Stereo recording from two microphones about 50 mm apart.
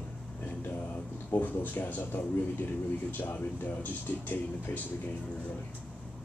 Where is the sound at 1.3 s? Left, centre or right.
Left.